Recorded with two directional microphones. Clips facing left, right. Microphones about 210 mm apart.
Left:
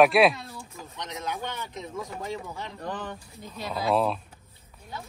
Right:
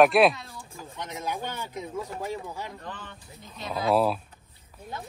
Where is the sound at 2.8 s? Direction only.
45° left (ahead or behind).